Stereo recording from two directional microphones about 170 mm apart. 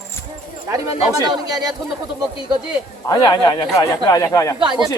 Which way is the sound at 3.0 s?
25° left (ahead or behind).